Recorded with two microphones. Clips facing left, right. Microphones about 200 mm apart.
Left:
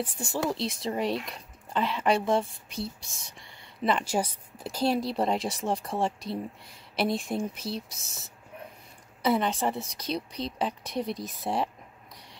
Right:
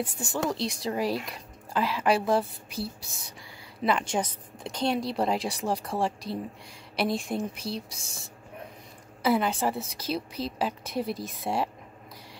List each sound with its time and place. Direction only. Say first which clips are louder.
0.2 s speech: even; centre (ahead or behind)